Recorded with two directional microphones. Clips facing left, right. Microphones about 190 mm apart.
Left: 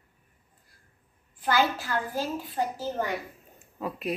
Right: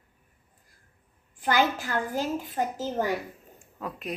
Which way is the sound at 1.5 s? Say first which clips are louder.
Right 1 dB; 15° right (ahead or behind).